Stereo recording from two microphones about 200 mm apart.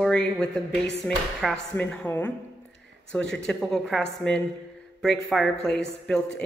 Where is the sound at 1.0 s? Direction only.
5° left (ahead or behind).